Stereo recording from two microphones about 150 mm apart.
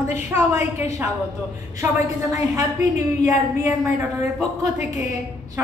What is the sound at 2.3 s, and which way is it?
A woman's voice, 20° right (ahead or behind).